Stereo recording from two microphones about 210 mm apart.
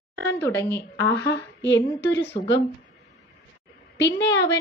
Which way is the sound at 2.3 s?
25° left (ahead or behind).